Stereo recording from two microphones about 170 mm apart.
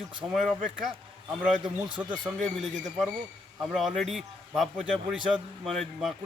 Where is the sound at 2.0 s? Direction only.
25° right (ahead or behind).